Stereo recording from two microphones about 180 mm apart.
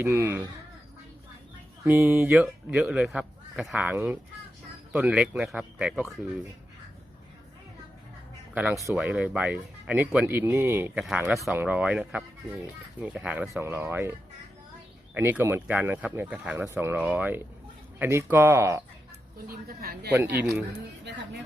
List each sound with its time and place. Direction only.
0.0 s speech: 15° right (ahead or behind)
1.8 s a man's voice: 15° right (ahead or behind)
8.5 s speech: 10° right (ahead or behind)
19.5 s a woman's voice: 55° right (ahead or behind)
20.4 s speech: 5° right (ahead or behind)